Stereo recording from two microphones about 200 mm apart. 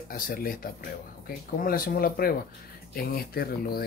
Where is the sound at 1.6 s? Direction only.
50° left (ahead or behind).